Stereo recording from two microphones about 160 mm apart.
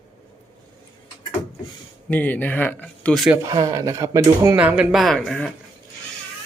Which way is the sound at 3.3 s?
20° right (ahead or behind).